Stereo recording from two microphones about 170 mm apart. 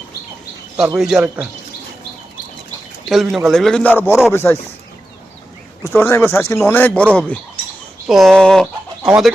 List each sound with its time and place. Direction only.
0.9 s a man's voice: 5° right (ahead or behind)
3.1 s a man's voice: centre (ahead or behind)
5.8 s speech: 10° left (ahead or behind)